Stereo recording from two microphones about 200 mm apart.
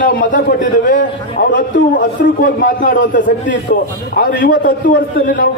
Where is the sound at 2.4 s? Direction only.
45° left (ahead or behind).